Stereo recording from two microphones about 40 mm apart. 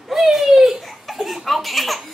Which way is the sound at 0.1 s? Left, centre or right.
Centre.